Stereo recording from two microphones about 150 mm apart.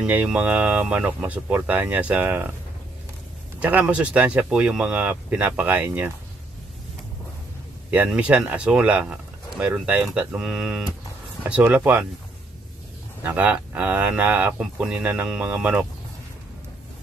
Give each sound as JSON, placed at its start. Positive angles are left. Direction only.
{"t": 0.0, "sound": "speech", "side_deg": -10}
{"t": 3.5, "sound": "speech", "side_deg": -10}
{"t": 7.9, "sound": "speech", "side_deg": -10}
{"t": 13.2, "sound": "speech", "side_deg": -10}